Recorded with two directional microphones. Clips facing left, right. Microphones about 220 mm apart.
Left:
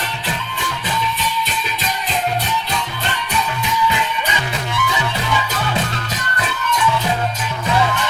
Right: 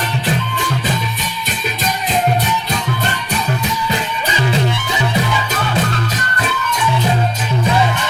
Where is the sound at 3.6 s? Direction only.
40° right (ahead or behind).